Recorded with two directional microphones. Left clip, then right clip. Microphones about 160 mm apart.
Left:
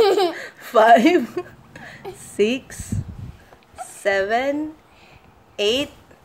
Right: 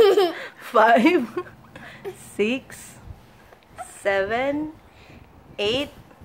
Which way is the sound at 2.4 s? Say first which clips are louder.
Left 4 dB; 5° left (ahead or behind).